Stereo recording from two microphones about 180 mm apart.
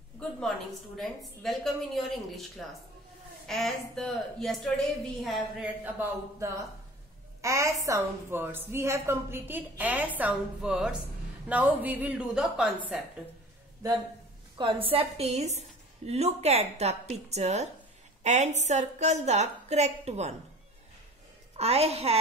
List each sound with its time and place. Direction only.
0.9 s a woman's voice: centre (ahead or behind)
3.4 s a woman's voice: centre (ahead or behind)
5.9 s a woman's voice: 15° right (ahead or behind)
14.6 s a woman's voice: 30° right (ahead or behind)
21.5 s a woman's voice: 35° right (ahead or behind)